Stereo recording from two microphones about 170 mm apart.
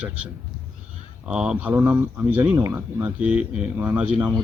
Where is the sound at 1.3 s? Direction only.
5° right (ahead or behind).